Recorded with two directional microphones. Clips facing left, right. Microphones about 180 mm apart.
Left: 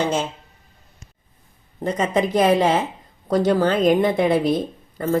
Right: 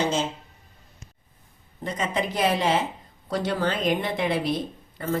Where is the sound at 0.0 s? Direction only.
55° left (ahead or behind).